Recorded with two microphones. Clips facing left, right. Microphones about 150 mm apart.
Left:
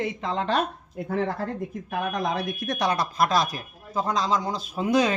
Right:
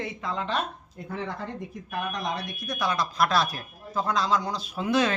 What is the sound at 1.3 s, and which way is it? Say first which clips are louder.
Speech: left 5 dB; 5° left (ahead or behind).